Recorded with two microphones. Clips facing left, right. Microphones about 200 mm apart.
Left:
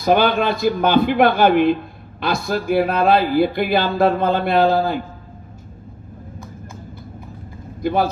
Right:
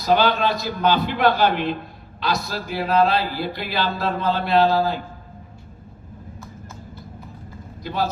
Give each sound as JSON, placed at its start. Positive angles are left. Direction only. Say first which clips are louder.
{"t": 0.0, "sound": "a man's voice", "louder": "left 3 dB", "side_deg": 50}
{"t": 7.8, "sound": "speech", "louder": "left 6 dB", "side_deg": 55}